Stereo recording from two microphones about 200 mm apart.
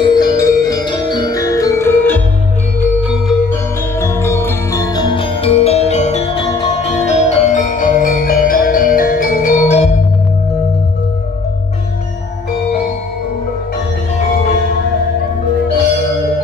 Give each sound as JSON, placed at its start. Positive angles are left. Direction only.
{"t": 0.0, "sound": "music", "side_deg": 20}
{"t": 3.0, "sound": "music", "side_deg": -5}
{"t": 4.0, "sound": "music", "side_deg": 15}
{"t": 7.0, "sound": "music", "side_deg": 35}